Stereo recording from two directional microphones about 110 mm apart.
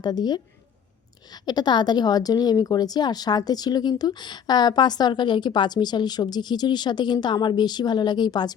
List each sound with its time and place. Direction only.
0.0 s a woman's voice: 40° left (ahead or behind)